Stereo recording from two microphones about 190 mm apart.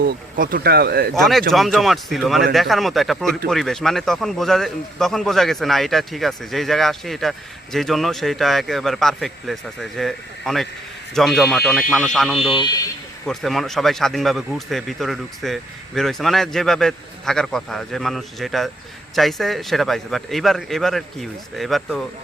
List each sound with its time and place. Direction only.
0.0 s speech: 50° right (ahead or behind)
1.2 s speech: centre (ahead or behind)